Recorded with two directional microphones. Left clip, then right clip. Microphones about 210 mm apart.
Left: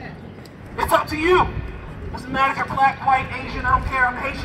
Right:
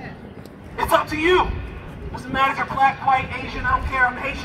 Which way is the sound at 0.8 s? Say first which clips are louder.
Even; 5° left (ahead or behind).